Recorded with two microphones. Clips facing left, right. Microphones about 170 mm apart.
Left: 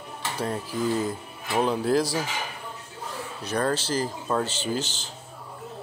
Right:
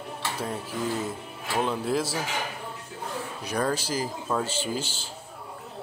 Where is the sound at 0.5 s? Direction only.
5° right (ahead or behind).